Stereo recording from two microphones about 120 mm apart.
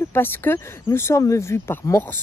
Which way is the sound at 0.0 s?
20° left (ahead or behind).